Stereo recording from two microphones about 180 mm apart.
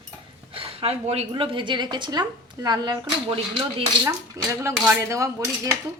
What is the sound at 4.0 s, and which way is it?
A woman's voice, 15° right (ahead or behind).